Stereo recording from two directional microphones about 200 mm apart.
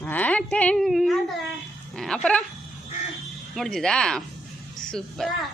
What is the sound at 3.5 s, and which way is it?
Speech, centre (ahead or behind).